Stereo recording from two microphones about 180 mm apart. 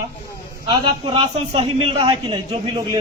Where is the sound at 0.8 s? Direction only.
30° right (ahead or behind).